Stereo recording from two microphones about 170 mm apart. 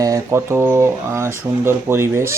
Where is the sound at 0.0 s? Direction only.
20° right (ahead or behind).